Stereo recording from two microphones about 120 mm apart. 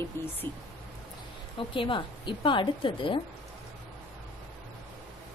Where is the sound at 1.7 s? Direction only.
45° left (ahead or behind).